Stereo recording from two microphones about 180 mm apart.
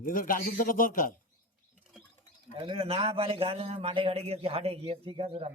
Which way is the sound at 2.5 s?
30° right (ahead or behind).